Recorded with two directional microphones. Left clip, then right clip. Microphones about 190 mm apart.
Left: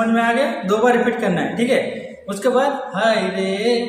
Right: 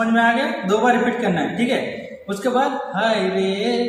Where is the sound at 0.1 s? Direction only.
20° left (ahead or behind).